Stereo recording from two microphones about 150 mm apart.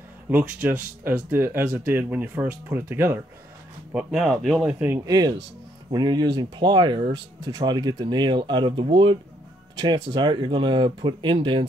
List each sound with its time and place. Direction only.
0.3 s speech: 10° right (ahead or behind)
3.9 s speech: centre (ahead or behind)
5.0 s speech: 25° right (ahead or behind)